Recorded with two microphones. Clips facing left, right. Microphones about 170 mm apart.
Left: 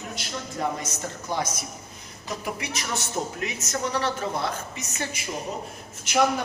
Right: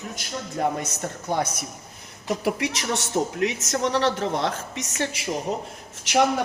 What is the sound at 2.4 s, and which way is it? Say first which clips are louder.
Speech: right 7 dB; 80° right.